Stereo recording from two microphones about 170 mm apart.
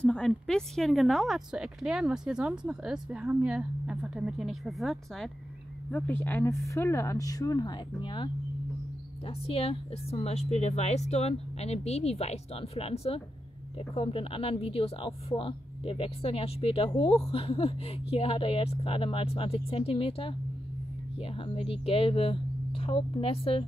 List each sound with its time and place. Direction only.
0.0 s speech: 5° left (ahead or behind); by 23.6 s 35° left (ahead or behind)